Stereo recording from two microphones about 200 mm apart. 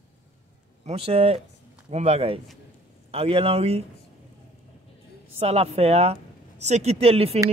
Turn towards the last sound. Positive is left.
turn(degrees=-30)  # may be behind; listen again after turning